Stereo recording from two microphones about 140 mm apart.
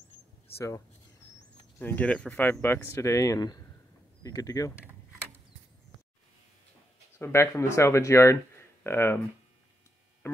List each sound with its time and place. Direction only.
0.6 s speech: 20° left (ahead or behind)
7.2 s speech: 15° left (ahead or behind)
10.2 s music: 20° left (ahead or behind)